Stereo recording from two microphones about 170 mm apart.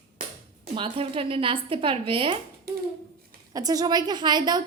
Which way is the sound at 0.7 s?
30° right (ahead or behind).